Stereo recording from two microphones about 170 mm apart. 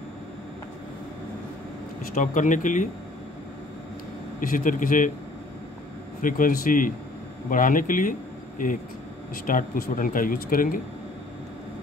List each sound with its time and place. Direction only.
2.1 s a man's voice: 50° left (ahead or behind)
4.4 s a man's voice: 55° left (ahead or behind)
6.2 s a man's voice: 55° left (ahead or behind)